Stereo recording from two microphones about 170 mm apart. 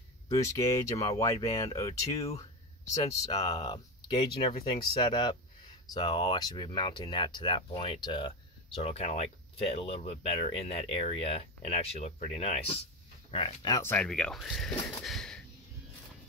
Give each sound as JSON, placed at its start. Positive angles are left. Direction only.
{"t": 0.3, "sound": "speech", "side_deg": 20}
{"t": 13.7, "sound": "speech", "side_deg": 20}
{"t": 13.9, "sound": "speech", "side_deg": 5}
{"t": 15.0, "sound": "a sound", "side_deg": 5}